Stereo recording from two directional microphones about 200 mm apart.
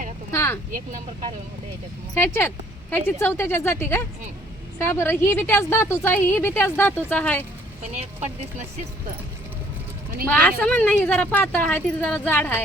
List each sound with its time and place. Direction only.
0.3 s speech: 15° left (ahead or behind)
2.1 s a woman's voice: 10° left (ahead or behind)
7.9 s speech: 35° right (ahead or behind)
10.2 s a woman's voice: 5° left (ahead or behind)